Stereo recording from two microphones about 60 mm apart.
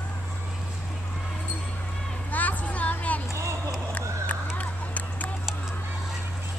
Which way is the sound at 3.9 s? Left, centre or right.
Left.